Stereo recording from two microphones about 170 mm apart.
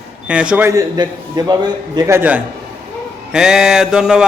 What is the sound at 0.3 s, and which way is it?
A man's voice, 5° right (ahead or behind).